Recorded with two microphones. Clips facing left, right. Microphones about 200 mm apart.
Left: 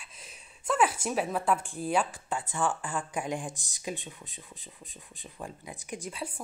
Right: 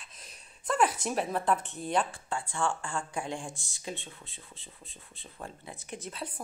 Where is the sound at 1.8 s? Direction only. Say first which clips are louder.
Left 1 dB; 5° left (ahead or behind).